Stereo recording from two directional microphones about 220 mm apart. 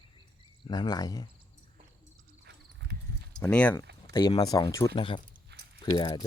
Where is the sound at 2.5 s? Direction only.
50° right (ahead or behind).